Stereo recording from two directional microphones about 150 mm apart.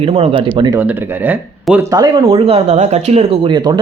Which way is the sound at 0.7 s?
10° right (ahead or behind).